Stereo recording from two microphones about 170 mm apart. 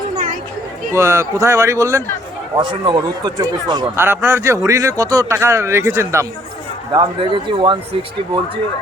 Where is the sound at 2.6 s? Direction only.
30° right (ahead or behind).